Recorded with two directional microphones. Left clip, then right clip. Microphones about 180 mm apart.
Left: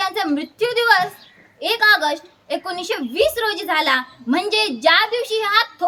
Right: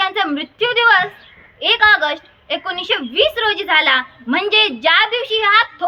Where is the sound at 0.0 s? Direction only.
30° left (ahead or behind).